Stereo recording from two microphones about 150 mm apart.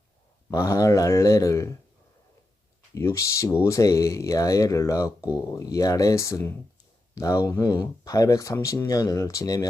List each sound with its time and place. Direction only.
0.5 s speech: 20° left (ahead or behind)
2.9 s speech: 20° left (ahead or behind)